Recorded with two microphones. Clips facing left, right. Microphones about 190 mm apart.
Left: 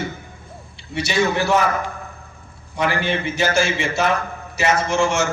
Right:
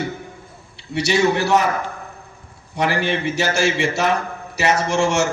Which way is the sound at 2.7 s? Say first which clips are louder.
Right 1 dB; 65° right (ahead or behind).